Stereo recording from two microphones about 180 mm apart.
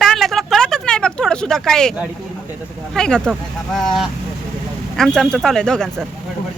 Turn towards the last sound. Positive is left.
turn(degrees=5)  # may be behind; listen again after turning